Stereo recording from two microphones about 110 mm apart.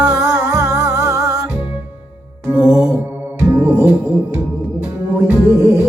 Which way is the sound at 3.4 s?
15° right (ahead or behind).